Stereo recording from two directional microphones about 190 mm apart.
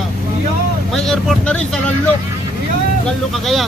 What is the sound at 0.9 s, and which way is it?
Speech, 5° left (ahead or behind).